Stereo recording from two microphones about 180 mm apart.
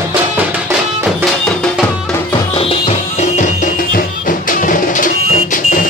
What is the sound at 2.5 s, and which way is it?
Music, 30° left (ahead or behind).